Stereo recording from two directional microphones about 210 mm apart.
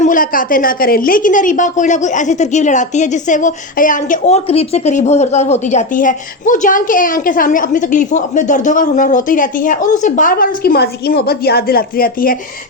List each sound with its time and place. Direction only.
0.0 s a woman's voice: 40° left (ahead or behind)